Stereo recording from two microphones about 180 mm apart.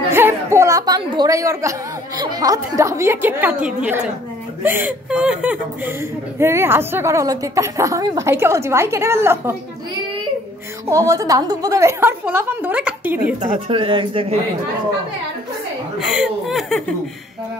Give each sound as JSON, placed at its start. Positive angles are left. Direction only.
{"t": 0.1, "sound": "a woman's voice", "side_deg": -15}
{"t": 10.9, "sound": "a woman's voice", "side_deg": -20}
{"t": 13.4, "sound": "speech", "side_deg": -30}
{"t": 16.0, "sound": "speech", "side_deg": 0}